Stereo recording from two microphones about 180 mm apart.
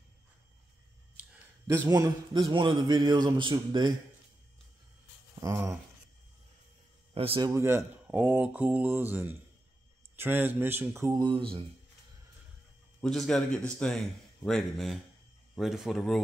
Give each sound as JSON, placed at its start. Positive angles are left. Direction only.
{"t": 1.9, "sound": "a man's voice", "side_deg": -20}
{"t": 5.4, "sound": "speech", "side_deg": -15}
{"t": 7.2, "sound": "a man's voice", "side_deg": -30}
{"t": 7.5, "sound": "speech", "side_deg": -15}
{"t": 13.0, "sound": "a man's voice", "side_deg": 0}